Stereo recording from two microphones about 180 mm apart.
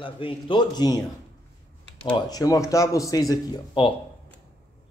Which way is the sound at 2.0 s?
25° left (ahead or behind).